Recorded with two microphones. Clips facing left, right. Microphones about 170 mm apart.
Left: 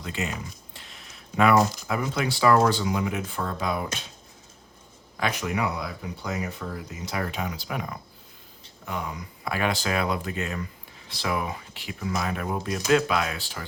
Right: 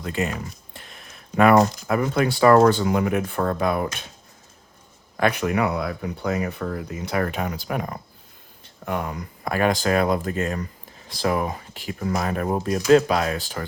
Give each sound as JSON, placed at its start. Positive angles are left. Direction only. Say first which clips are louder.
{"t": 0.0, "sound": "a sound", "louder": "right 5 dB", "side_deg": -50}
{"t": 1.9, "sound": "speech", "louder": "right 6 dB", "side_deg": -55}
{"t": 5.1, "sound": "speech", "louder": "right 6 dB", "side_deg": -55}